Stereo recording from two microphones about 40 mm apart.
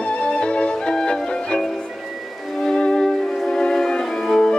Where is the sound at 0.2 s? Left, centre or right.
Left.